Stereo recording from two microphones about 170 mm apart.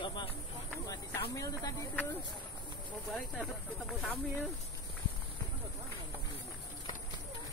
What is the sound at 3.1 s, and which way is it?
Speech, 5° left (ahead or behind).